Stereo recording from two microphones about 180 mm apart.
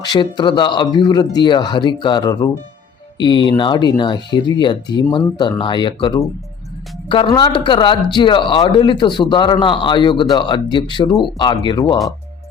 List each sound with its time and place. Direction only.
0.0 s speech: 25° left (ahead or behind)